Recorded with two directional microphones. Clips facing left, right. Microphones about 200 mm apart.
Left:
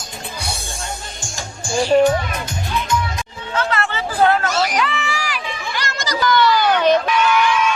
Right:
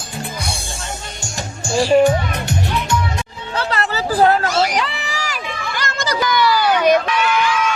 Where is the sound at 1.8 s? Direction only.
10° right (ahead or behind).